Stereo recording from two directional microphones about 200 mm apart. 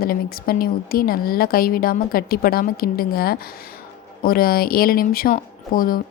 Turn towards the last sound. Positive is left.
turn(degrees=45)  # may be behind; listen again after turning